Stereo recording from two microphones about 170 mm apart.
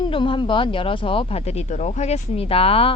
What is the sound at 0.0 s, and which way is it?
Speech, 30° left (ahead or behind).